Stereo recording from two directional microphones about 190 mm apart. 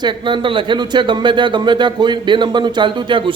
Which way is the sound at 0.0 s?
25° right (ahead or behind).